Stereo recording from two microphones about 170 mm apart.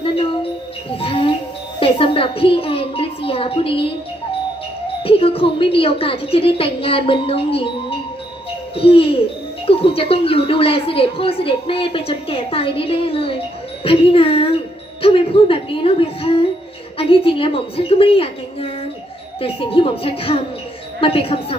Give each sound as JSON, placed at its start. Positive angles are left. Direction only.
{"t": 0.0, "sound": "a sound", "side_deg": 30}
{"t": 0.9, "sound": "music", "side_deg": 35}
{"t": 1.8, "sound": "a woman's voice", "side_deg": 30}
{"t": 5.0, "sound": "a woman's voice", "side_deg": 35}